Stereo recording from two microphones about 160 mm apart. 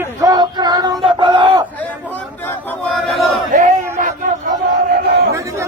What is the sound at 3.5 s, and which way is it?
Battle cry, 55° right (ahead or behind).